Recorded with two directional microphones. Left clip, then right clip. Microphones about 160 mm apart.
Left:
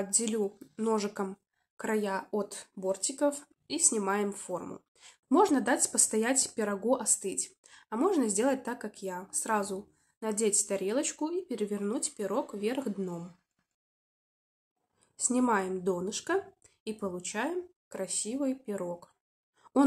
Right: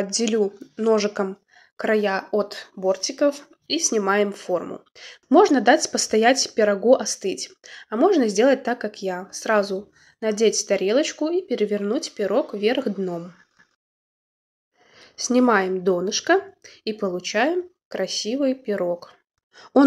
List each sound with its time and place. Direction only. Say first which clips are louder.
0.0 s speech: right 10 dB; 20° right (ahead or behind)
15.0 s speech: right 11 dB; 15° right (ahead or behind)
19.5 s a sound: right 12 dB; 25° right (ahead or behind)